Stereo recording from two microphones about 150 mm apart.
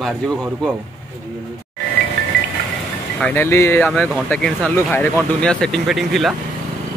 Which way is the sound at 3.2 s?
15° left (ahead or behind).